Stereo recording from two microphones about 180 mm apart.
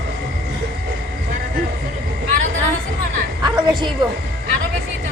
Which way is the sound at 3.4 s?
25° right (ahead or behind).